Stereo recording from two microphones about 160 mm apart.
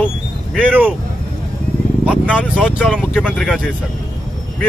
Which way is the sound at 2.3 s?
10° left (ahead or behind).